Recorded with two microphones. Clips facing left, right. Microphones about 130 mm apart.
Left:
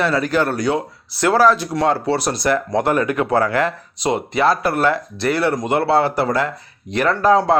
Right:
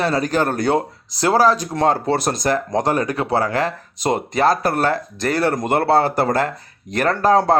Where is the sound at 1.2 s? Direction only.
35° right (ahead or behind).